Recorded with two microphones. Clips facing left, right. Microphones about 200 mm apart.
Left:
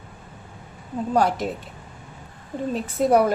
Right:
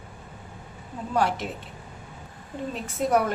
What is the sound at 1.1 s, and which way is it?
Speech, 40° left (ahead or behind).